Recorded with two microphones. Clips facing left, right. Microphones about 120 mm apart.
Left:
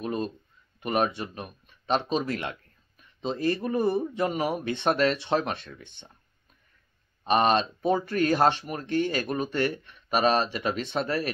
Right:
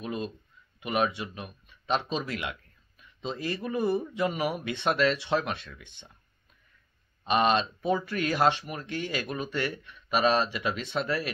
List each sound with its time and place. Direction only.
0.0 s a sound: 45° left (ahead or behind)
0.7 s speech: 45° left (ahead or behind)
7.2 s speech: 45° left (ahead or behind)